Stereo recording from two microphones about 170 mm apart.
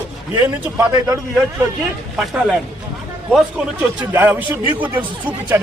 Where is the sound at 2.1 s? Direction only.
5° right (ahead or behind).